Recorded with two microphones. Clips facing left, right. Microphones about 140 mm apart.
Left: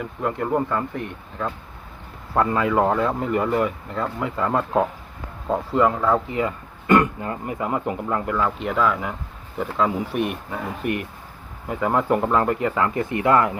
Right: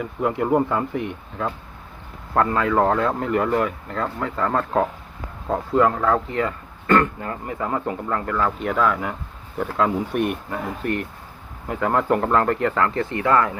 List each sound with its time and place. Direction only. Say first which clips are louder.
0.0 s speech: right 3 dB; 5° right (ahead or behind)
2.3 s speech: even; 10° left (ahead or behind)
8.4 s speech: right 2 dB; centre (ahead or behind); by 13.5 s 20° left (ahead or behind)